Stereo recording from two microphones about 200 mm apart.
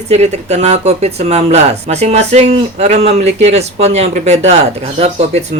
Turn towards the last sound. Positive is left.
turn(degrees=-35)  # may be behind; listen again after turning